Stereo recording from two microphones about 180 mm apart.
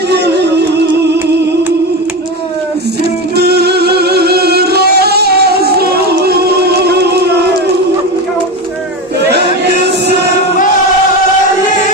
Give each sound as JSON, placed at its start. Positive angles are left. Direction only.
{"t": 0.1, "sound": "music", "side_deg": -65}
{"t": 3.0, "sound": "music", "side_deg": -65}